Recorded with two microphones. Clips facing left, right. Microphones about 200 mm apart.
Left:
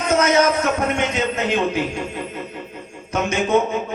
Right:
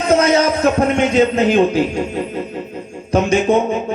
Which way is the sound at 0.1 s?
30° right (ahead or behind).